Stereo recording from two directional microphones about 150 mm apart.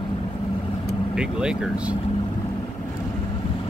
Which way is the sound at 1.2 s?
5° right (ahead or behind).